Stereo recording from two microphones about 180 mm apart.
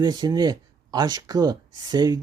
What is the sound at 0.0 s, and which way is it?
Speech, 20° right (ahead or behind).